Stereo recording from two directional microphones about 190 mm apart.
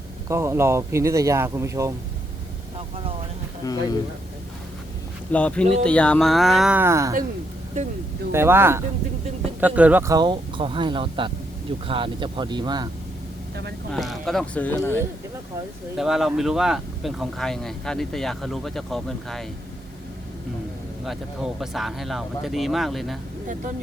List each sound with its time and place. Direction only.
0.3 s speech: 15° right (ahead or behind)
3.6 s speech: 20° left (ahead or behind)
5.3 s speech: 5° left (ahead or behind); by 7.2 s 15° right (ahead or behind)
8.3 s speech: 15° right (ahead or behind)
13.9 s speech: centre (ahead or behind)
16.0 s speech: centre (ahead or behind)
21.0 s speech: centre (ahead or behind)